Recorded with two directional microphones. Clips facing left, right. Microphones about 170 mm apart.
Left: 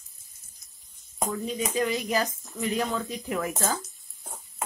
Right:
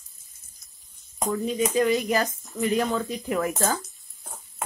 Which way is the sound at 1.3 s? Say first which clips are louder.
Right 6 dB; 55° right (ahead or behind).